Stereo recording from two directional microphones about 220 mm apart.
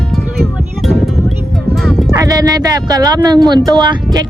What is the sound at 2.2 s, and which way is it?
Speech, 15° right (ahead or behind).